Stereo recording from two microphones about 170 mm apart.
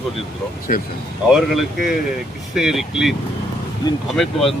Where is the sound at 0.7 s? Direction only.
50° left (ahead or behind).